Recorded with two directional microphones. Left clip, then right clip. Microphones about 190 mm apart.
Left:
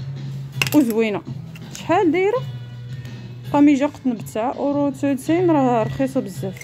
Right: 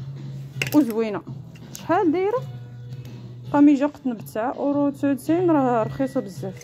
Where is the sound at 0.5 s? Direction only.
20° left (ahead or behind).